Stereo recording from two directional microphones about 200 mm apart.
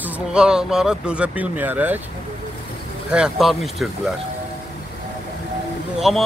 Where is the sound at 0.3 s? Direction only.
5° right (ahead or behind).